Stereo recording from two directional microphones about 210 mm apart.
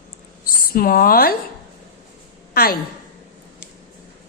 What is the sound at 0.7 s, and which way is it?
Speech, 45° left (ahead or behind).